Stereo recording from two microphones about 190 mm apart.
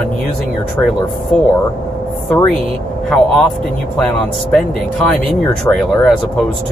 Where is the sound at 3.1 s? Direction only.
Centre (ahead or behind).